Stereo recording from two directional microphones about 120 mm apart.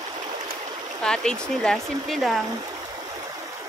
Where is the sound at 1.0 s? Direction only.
5° left (ahead or behind).